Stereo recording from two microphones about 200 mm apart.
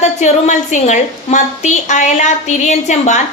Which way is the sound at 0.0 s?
35° left (ahead or behind).